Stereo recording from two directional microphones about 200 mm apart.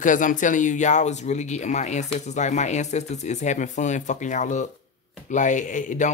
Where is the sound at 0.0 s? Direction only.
40° left (ahead or behind).